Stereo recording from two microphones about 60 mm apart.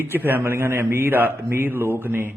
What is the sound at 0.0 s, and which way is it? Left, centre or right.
A man's voice, right.